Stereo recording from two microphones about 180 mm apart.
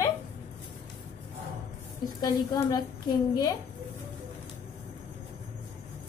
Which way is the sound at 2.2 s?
25° left (ahead or behind).